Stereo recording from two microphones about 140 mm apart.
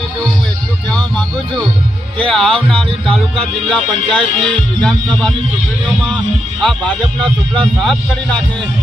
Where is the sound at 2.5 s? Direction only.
40° right (ahead or behind).